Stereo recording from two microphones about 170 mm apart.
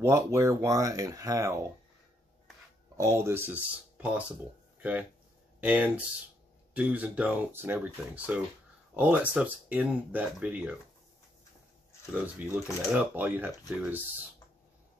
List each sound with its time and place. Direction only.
0.0 s speech: 15° right (ahead or behind)
3.0 s speech: 15° right (ahead or behind)
5.6 s speech: 10° right (ahead or behind)
12.1 s speech: 10° right (ahead or behind)